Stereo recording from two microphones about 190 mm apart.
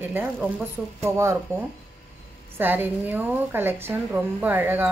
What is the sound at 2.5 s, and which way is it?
A woman's voice, 10° right (ahead or behind).